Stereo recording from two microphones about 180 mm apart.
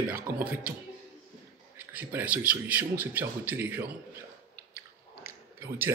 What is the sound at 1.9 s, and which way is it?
Speech, 10° right (ahead or behind).